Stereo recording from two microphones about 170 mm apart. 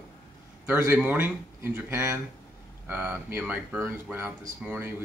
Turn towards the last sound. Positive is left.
turn(degrees=-15)  # may be behind; listen again after turning